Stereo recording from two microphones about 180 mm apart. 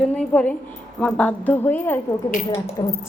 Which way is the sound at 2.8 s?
25° left (ahead or behind).